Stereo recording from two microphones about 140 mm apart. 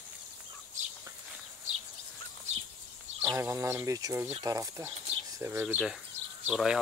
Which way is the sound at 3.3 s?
20° right (ahead or behind).